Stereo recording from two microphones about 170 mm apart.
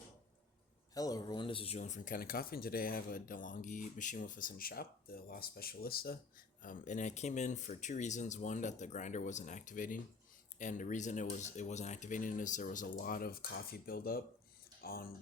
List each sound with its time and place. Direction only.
0.9 s speech: 20° left (ahead or behind); by 6.1 s 60° left (ahead or behind)
6.6 s speech: 50° left (ahead or behind)